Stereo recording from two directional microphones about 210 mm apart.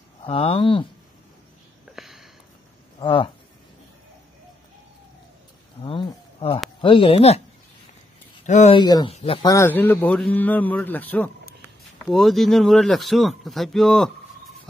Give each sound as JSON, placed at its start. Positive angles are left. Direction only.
{"t": 0.2, "sound": "speech", "side_deg": 25}
{"t": 2.0, "sound": "a sound", "side_deg": 0}
{"t": 3.0, "sound": "speech", "side_deg": 25}
{"t": 5.9, "sound": "speech", "side_deg": 25}
{"t": 8.5, "sound": "a man's voice", "side_deg": 30}